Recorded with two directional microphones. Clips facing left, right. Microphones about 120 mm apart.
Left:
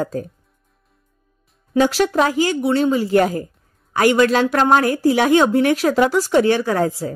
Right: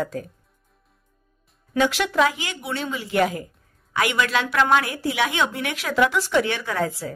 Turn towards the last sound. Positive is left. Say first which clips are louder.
# left 6 dB
turn(degrees=40)  # may be behind; listen again after turning